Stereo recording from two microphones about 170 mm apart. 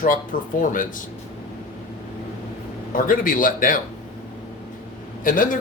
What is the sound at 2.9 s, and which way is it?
Speech, 55° left (ahead or behind).